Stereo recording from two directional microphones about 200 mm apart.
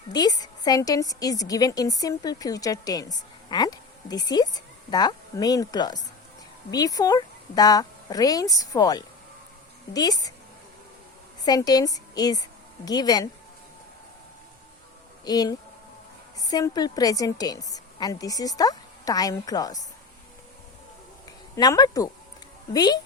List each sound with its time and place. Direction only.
0.1 s a woman's voice: 20° left (ahead or behind)
11.4 s a woman's voice: 20° left (ahead or behind)
15.2 s a woman's voice: 20° left (ahead or behind)
21.5 s a woman's voice: 20° left (ahead or behind)